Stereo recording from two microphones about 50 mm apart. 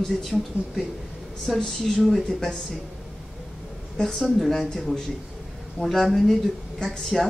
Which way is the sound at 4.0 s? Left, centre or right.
Centre.